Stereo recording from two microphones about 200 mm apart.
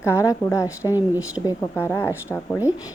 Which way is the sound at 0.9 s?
10° right (ahead or behind).